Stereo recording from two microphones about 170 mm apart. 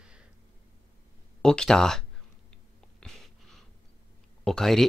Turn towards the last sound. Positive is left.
turn(degrees=0)  # may be behind; listen again after turning